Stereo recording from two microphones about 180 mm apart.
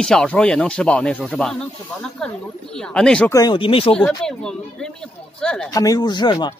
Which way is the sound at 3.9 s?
5° left (ahead or behind).